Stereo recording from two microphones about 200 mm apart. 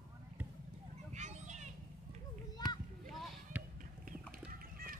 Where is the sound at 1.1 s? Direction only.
35° right (ahead or behind).